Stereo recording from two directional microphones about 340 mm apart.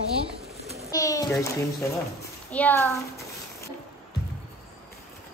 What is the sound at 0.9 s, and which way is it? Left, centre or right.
A child's voice, centre.